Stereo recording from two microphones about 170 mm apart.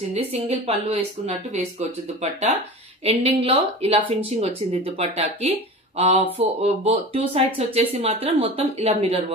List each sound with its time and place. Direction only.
0.1 s speech: 35° right (ahead or behind)
3.0 s speech: 35° right (ahead or behind)